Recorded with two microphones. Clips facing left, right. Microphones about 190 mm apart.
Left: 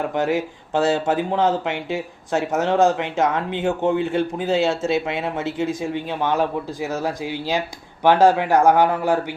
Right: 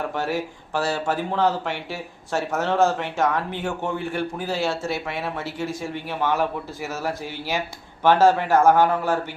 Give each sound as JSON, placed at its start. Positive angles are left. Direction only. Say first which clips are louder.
{"t": 0.1, "sound": "speech", "louder": "left 5 dB", "side_deg": 20}